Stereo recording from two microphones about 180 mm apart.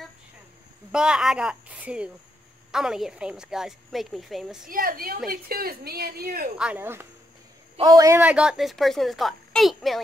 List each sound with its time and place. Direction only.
0.9 s speech: 5° right (ahead or behind)
4.6 s a woman's voice: 50° right (ahead or behind)
6.6 s speech: 10° right (ahead or behind)